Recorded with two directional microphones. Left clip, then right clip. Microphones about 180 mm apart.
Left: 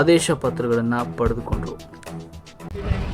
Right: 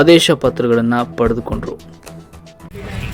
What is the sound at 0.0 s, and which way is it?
Speech, 15° right (ahead or behind).